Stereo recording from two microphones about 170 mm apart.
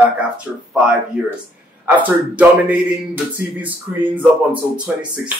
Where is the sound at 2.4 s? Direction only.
10° right (ahead or behind).